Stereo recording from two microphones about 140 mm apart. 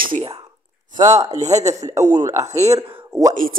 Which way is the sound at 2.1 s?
25° right (ahead or behind).